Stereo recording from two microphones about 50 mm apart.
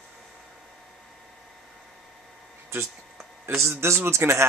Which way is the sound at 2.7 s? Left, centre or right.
Right.